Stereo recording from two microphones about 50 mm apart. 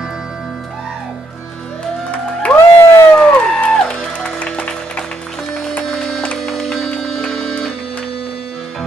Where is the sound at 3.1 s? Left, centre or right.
Left.